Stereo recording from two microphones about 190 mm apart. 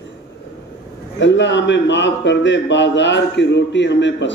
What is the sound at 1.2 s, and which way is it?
A man's voice, 70° left (ahead or behind).